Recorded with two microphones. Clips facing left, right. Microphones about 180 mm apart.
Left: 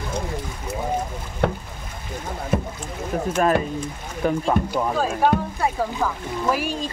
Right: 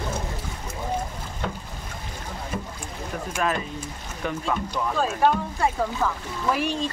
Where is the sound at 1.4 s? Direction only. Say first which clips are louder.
Left 9 dB; 65° left (ahead or behind).